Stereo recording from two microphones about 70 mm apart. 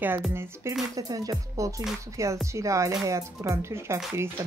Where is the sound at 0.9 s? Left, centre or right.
Right.